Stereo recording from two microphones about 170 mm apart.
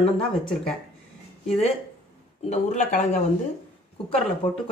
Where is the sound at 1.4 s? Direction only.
40° left (ahead or behind).